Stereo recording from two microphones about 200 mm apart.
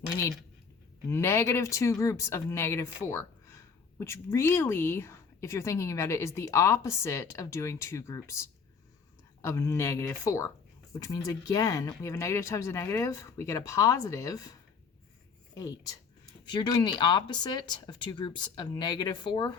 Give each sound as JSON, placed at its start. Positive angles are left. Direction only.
{"t": 1.1, "sound": "speech", "side_deg": 15}
{"t": 15.5, "sound": "speech", "side_deg": 15}